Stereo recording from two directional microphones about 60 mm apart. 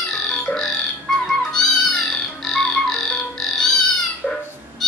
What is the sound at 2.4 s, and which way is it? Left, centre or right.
Frog, centre.